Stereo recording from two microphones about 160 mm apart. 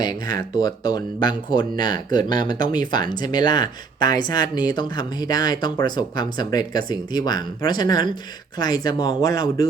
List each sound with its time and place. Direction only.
0.0 s speech: 25° left (ahead or behind)